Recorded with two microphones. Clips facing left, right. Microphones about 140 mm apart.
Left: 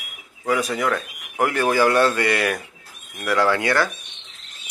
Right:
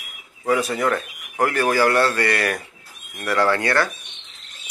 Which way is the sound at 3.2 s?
Centre (ahead or behind).